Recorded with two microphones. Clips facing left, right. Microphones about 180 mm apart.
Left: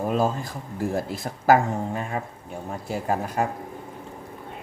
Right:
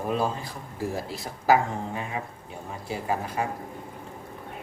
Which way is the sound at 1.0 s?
50° left (ahead or behind).